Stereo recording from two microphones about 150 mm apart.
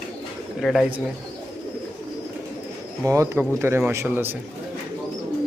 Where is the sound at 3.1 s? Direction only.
20° right (ahead or behind).